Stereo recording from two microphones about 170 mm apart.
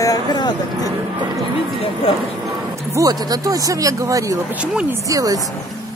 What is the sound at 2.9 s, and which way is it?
Speech, 20° right (ahead or behind).